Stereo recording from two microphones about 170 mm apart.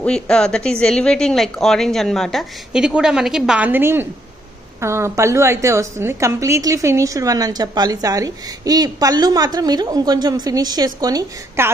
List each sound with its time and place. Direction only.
0.0 s a woman's voice: 5° left (ahead or behind); by 11.7 s 20° right (ahead or behind)